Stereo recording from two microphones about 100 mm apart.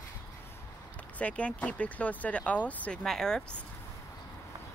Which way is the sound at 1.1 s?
15° left (ahead or behind).